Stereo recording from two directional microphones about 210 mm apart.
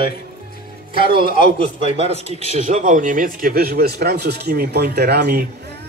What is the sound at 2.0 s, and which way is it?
A man's voice, 30° right (ahead or behind).